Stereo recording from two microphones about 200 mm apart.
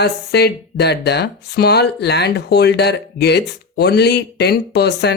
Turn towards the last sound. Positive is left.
turn(degrees=55)  # may be behind; listen again after turning